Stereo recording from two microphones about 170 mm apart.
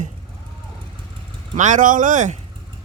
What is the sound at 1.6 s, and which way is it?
Speech, 50° right (ahead or behind).